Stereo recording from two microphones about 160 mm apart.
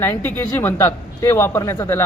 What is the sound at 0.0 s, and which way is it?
Speech, 15° left (ahead or behind).